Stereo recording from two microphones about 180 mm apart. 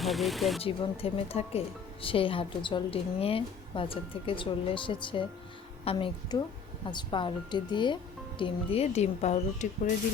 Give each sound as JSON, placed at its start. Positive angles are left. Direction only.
{"t": 0.0, "sound": "speech", "side_deg": 0}
{"t": 0.6, "sound": "a woman's voice", "side_deg": 30}